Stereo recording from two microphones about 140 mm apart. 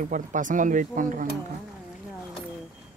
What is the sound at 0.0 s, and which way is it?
Speech, 65° right (ahead or behind).